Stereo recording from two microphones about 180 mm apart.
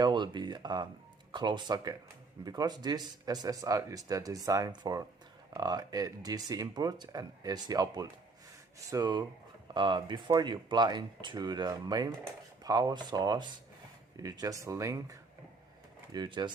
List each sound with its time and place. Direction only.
0.0 s speech: 25° right (ahead or behind)